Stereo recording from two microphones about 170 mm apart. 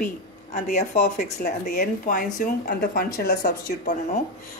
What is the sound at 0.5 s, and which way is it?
Speech, 45° left (ahead or behind).